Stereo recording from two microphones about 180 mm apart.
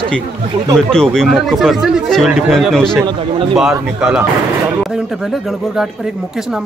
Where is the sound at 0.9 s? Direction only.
5° left (ahead or behind).